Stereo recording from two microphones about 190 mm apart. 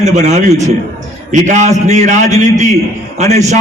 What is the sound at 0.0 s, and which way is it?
A man's voice, 35° right (ahead or behind).